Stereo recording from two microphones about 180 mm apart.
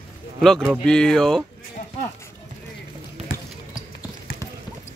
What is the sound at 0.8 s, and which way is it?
Speech, 5° left (ahead or behind).